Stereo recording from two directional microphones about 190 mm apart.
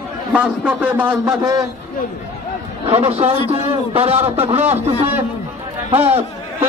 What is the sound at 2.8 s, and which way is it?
A man's voice, 30° right (ahead or behind).